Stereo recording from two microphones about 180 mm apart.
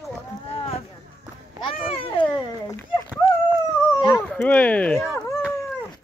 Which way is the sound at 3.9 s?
20° left (ahead or behind).